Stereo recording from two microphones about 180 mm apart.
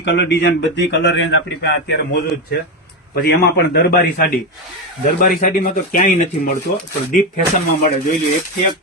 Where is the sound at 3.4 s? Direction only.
65° left (ahead or behind).